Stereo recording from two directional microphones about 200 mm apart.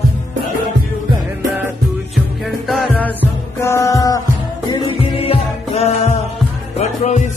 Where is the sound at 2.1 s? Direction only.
Centre (ahead or behind).